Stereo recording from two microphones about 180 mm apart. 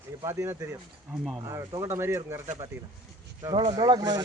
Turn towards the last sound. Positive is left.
turn(degrees=-20)  # may be behind; listen again after turning